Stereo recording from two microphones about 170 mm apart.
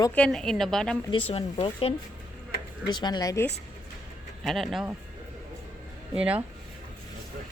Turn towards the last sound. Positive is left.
turn(degrees=-10)  # may be behind; listen again after turning